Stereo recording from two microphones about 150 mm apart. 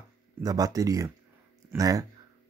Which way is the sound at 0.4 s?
25° right (ahead or behind).